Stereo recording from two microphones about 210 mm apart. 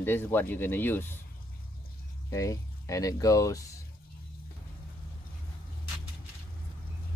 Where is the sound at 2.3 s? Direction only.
15° left (ahead or behind).